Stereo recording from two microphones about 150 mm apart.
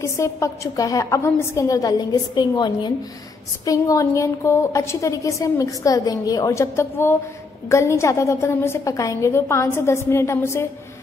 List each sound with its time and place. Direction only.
0.0 s a woman's voice: 20° left (ahead or behind)